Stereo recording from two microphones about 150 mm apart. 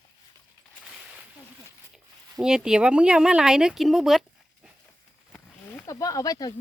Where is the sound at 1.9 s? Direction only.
5° right (ahead or behind).